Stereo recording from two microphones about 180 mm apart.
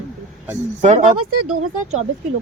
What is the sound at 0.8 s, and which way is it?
Speech, 40° right (ahead or behind).